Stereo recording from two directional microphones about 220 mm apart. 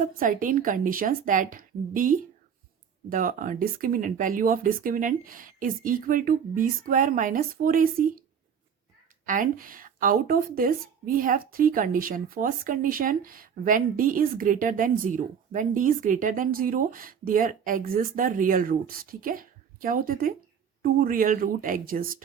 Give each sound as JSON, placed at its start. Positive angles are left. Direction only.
{"t": 0.2, "sound": "speech", "side_deg": -40}
{"t": 9.2, "sound": "speech", "side_deg": -35}